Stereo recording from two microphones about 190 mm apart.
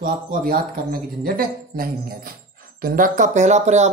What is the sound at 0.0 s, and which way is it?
Speech, 45° right (ahead or behind).